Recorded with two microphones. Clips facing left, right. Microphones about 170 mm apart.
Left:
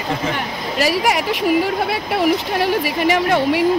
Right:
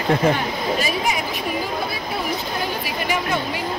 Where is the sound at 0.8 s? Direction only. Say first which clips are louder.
Left 5 dB; 80° left.